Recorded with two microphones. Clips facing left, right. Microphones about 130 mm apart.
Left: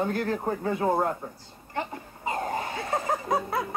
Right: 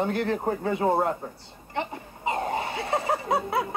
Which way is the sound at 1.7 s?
20° right (ahead or behind).